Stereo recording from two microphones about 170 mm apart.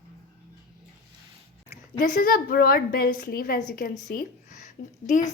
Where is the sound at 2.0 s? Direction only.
55° left (ahead or behind).